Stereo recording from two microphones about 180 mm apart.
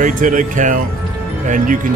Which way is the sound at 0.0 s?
45° right (ahead or behind).